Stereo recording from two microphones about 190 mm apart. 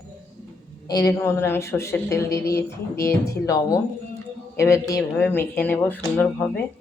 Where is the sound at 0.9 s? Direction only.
20° left (ahead or behind).